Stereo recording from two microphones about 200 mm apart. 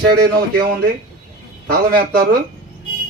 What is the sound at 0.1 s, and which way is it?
Speech, 50° right (ahead or behind).